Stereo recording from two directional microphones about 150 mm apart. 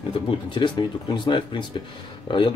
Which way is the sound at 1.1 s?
30° left (ahead or behind).